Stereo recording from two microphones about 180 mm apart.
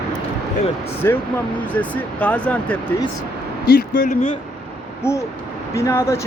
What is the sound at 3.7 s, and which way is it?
Speech, 55° left (ahead or behind).